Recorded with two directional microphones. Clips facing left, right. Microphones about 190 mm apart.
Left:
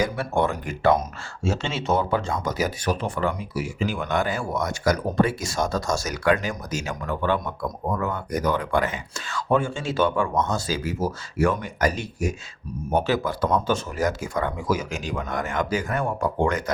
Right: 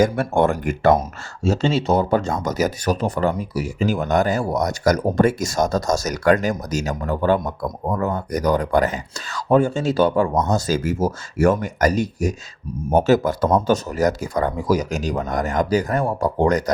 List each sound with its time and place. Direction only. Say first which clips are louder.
0.0 s speech: right 6 dB; 50° right (ahead or behind)